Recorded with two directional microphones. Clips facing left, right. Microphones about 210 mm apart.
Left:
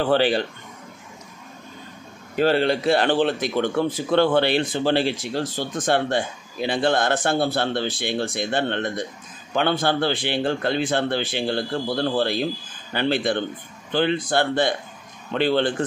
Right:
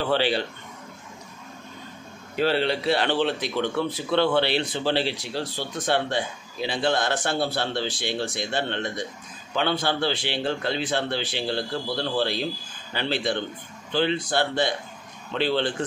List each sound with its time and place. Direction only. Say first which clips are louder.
0.0 s a man's voice: left 4 dB; 50° left (ahead or behind)
2.3 s a man's voice: left 4 dB; 45° left (ahead or behind)